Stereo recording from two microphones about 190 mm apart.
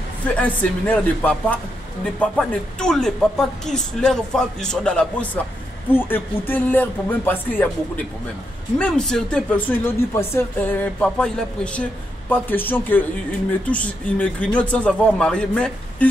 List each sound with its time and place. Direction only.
0.4 s speech: 10° left (ahead or behind)